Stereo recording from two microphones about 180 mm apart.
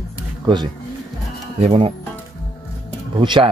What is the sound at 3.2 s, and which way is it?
Speech, 25° right (ahead or behind).